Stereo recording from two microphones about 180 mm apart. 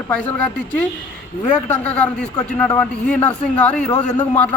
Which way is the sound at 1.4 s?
10° left (ahead or behind).